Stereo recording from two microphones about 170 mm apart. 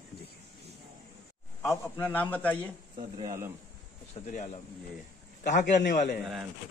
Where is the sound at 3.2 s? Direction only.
15° right (ahead or behind).